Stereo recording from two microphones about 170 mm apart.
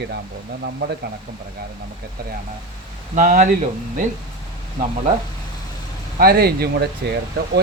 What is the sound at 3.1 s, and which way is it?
Speech, 50° right (ahead or behind).